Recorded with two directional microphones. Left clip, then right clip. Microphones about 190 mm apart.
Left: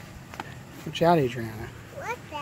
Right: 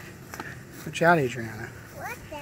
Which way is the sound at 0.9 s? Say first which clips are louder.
Right 1 dB; 10° left (ahead or behind).